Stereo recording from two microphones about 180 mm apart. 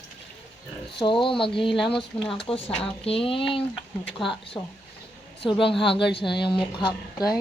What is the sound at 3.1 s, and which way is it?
Speech, 30° left (ahead or behind).